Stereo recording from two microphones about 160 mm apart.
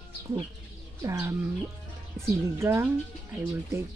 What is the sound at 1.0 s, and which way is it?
Speech, 20° right (ahead or behind).